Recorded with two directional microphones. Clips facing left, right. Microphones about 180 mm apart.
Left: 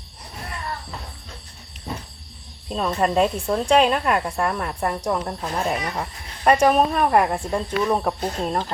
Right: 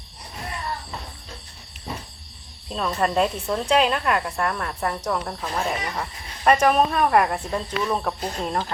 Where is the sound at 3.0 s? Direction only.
5° left (ahead or behind).